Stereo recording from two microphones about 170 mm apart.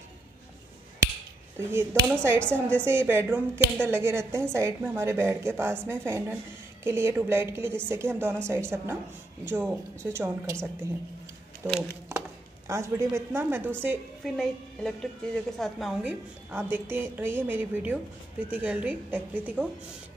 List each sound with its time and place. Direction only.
1.6 s a woman's voice: 15° right (ahead or behind)
11.6 s a woman's voice: 15° right (ahead or behind)
14.2 s a woman's voice: centre (ahead or behind)